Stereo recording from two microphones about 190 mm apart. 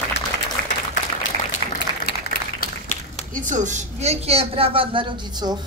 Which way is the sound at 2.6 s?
40° left (ahead or behind).